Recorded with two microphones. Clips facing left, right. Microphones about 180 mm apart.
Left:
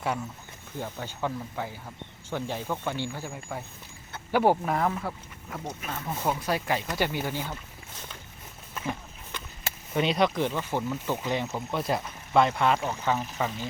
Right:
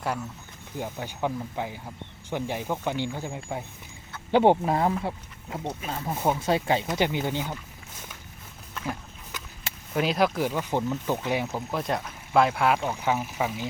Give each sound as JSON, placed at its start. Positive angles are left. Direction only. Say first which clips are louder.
{"t": 0.8, "sound": "speech", "louder": "right 2 dB", "side_deg": -15}
{"t": 8.7, "sound": "a sound", "louder": "even", "side_deg": 0}
{"t": 9.9, "sound": "speech", "louder": "right 1 dB", "side_deg": -5}